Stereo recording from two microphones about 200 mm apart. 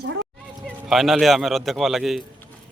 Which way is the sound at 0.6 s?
Centre (ahead or behind).